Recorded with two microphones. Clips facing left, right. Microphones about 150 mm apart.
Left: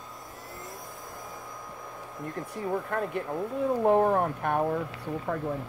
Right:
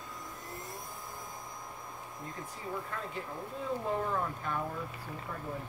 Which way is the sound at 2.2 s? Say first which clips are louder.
Left 10 dB; 60° left (ahead or behind).